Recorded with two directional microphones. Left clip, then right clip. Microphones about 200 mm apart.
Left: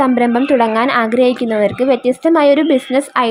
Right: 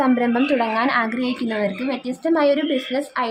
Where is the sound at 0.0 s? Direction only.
20° left (ahead or behind).